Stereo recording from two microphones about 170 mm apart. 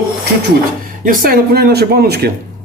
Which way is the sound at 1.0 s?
55° right (ahead or behind).